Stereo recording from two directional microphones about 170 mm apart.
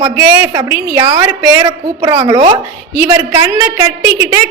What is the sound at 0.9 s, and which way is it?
A woman's voice, 20° right (ahead or behind).